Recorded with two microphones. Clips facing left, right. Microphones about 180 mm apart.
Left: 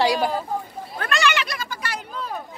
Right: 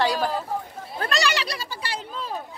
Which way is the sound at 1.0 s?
35° right (ahead or behind).